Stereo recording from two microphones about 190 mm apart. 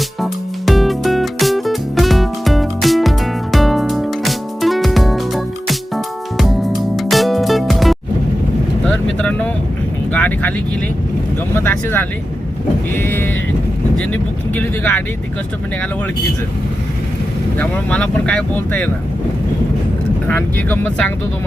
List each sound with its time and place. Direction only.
0.2 s music: centre (ahead or behind)
8.8 s vehicle: 5° left (ahead or behind)
11.5 s speech: 10° left (ahead or behind)
17.6 s speech: 5° left (ahead or behind)
20.2 s speech: 10° left (ahead or behind)